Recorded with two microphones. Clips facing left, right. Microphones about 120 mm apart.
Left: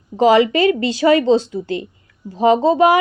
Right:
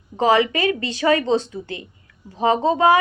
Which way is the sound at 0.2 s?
35° left (ahead or behind).